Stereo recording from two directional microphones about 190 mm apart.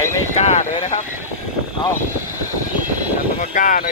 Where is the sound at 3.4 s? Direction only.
45° left (ahead or behind).